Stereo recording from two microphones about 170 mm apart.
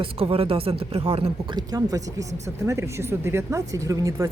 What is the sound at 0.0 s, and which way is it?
Speech, 35° right (ahead or behind).